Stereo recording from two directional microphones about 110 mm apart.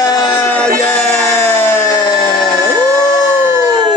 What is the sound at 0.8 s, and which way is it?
Music, 15° left (ahead or behind).